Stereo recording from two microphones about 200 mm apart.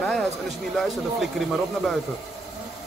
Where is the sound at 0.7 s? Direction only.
Centre (ahead or behind).